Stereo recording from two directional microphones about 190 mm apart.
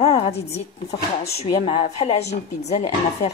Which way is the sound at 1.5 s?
25° left (ahead or behind).